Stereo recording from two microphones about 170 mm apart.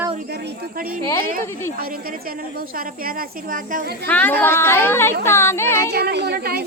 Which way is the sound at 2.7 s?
60° right (ahead or behind).